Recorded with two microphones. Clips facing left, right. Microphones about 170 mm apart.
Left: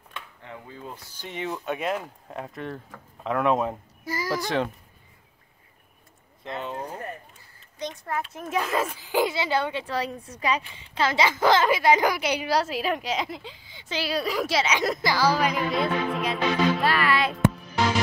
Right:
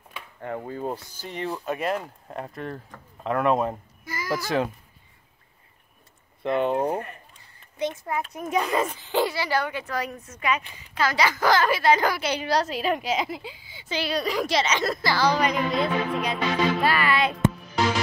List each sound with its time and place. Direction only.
0.4 s speech: 50° right (ahead or behind)
1.2 s speech: centre (ahead or behind)
4.0 s a sound: 35° left (ahead or behind)
6.4 s speech: 60° right (ahead or behind)
7.8 s a child's voice: centre (ahead or behind)